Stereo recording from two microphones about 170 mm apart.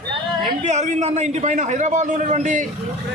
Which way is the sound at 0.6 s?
45° right (ahead or behind).